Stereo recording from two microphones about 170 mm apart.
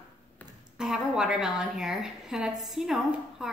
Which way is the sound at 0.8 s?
5° right (ahead or behind).